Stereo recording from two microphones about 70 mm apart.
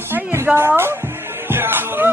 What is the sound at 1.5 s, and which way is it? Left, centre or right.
Music, right.